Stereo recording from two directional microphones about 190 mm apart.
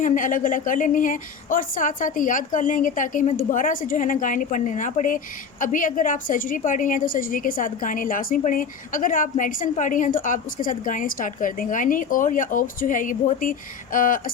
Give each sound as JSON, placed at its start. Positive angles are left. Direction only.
{"t": 0.0, "sound": "a woman's voice", "side_deg": 40}